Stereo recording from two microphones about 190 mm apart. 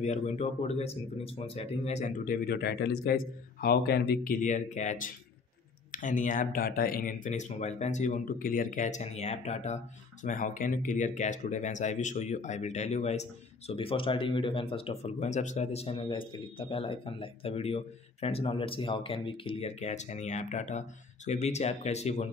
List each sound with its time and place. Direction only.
0.0 s speech: 35° left (ahead or behind)